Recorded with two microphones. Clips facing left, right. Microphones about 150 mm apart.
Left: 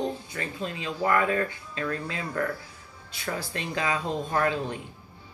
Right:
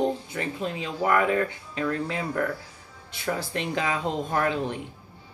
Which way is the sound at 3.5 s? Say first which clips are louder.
Left 1 dB; 20° right (ahead or behind).